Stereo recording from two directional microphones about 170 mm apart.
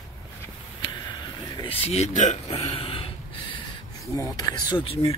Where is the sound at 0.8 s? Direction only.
25° left (ahead or behind).